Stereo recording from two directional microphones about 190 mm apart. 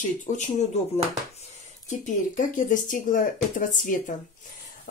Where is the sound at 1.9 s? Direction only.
40° left (ahead or behind).